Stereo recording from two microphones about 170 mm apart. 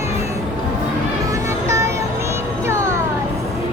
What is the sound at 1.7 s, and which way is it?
Music, 15° right (ahead or behind).